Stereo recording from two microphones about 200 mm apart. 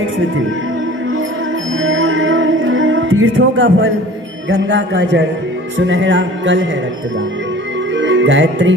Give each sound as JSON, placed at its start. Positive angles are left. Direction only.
{"t": 1.8, "sound": "music", "side_deg": -70}
{"t": 4.4, "sound": "a man's voice", "side_deg": -70}
{"t": 7.9, "sound": "music", "side_deg": -65}